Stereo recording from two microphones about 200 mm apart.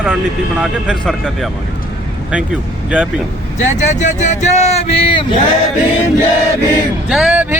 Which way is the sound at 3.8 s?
35° left (ahead or behind).